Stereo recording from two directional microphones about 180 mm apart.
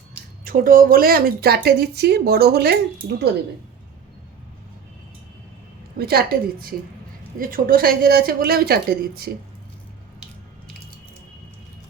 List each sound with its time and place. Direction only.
0.4 s speech: 50° right (ahead or behind)
6.0 s speech: 60° right (ahead or behind)